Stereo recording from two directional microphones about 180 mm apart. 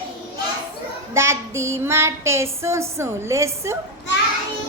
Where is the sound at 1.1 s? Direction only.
15° right (ahead or behind).